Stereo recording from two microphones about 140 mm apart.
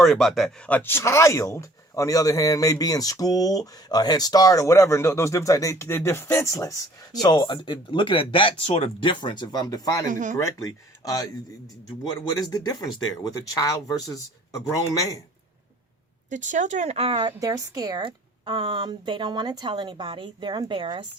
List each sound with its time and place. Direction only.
0.0 s speech: centre (ahead or behind)
0.8 s speech: 15° left (ahead or behind)
10.1 s speech: 65° right (ahead or behind)
10.3 s speech: 25° left (ahead or behind)
16.3 s speech: 60° right (ahead or behind); by 17.3 s 40° right (ahead or behind)
17.4 s a woman's voice: 25° right (ahead or behind)